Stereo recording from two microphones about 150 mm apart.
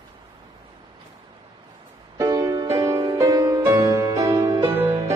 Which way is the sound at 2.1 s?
20° right (ahead or behind).